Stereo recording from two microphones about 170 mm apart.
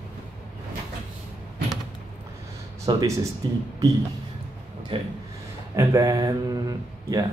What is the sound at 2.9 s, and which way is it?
Mantra, 25° right (ahead or behind).